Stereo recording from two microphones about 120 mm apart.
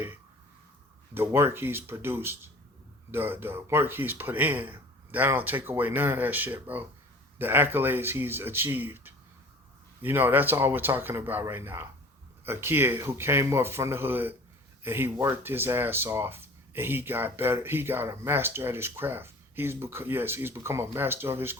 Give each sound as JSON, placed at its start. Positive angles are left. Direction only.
{"t": 1.1, "sound": "speech", "side_deg": -20}